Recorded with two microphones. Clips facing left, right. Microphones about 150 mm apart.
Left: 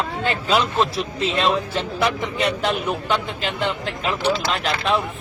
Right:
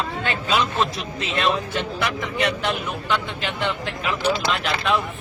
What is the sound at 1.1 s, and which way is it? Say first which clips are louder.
Speech: left 2 dB; 30° left (ahead or behind).